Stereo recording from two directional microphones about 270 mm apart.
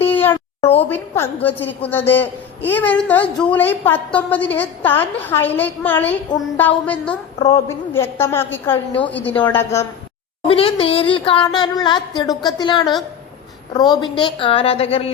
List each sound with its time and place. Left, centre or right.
0.0 s a sound: centre
0.8 s a woman's voice: centre
7.3 s a woman's voice: left
7.9 s a woman's voice: centre
10.5 s a woman's voice: left